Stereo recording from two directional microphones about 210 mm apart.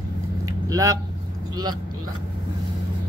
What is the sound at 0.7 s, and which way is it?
Speech, 15° right (ahead or behind).